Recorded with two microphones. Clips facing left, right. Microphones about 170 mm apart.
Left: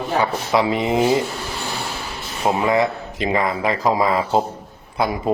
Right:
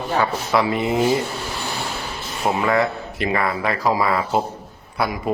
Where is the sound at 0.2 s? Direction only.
15° left (ahead or behind).